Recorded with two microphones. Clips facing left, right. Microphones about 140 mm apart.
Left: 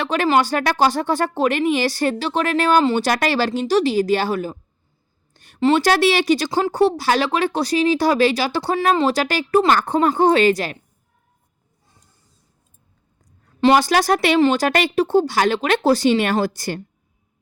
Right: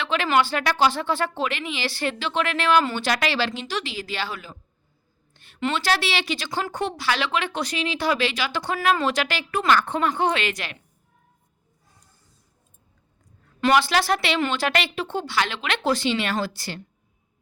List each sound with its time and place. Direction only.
0.0 s speech: 40° left (ahead or behind)
13.6 s speech: 35° left (ahead or behind)